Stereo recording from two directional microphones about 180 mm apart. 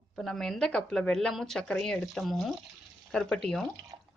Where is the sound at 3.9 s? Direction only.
25° right (ahead or behind).